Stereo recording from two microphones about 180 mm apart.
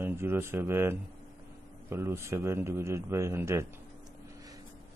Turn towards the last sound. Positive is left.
turn(degrees=-15)  # may be behind; listen again after turning